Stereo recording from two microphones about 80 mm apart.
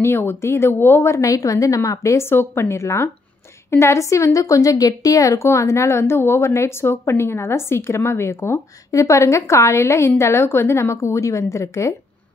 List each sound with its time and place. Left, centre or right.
0.0 s a woman's voice: left